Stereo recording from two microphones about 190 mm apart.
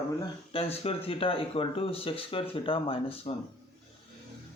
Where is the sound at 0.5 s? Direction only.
30° left (ahead or behind).